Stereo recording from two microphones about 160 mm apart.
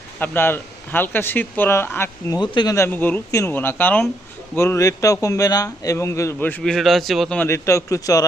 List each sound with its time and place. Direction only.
0.2 s speech: 15° left (ahead or behind)
2.4 s speech: 25° left (ahead or behind)